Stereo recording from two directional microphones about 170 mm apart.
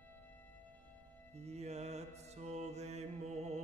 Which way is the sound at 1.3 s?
40° right (ahead or behind).